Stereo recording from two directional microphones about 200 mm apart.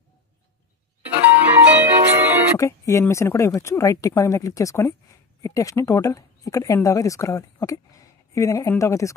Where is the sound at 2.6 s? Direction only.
15° left (ahead or behind).